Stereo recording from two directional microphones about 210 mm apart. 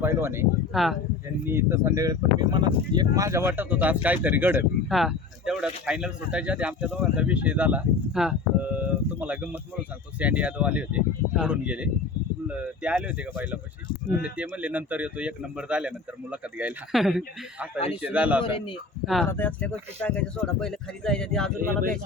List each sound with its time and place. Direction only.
0.0 s speech: 10° right (ahead or behind)
0.7 s speech: centre (ahead or behind)
1.5 s speech: 10° right (ahead or behind)
18.4 s a man's voice: 25° left (ahead or behind)
19.0 s speech: centre (ahead or behind)